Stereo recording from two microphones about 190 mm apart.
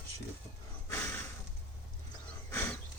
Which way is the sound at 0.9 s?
15° left (ahead or behind).